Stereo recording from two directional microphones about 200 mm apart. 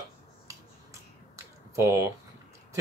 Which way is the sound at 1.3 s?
15° right (ahead or behind).